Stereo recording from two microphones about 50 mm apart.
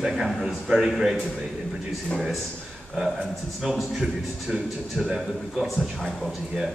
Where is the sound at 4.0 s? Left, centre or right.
Centre.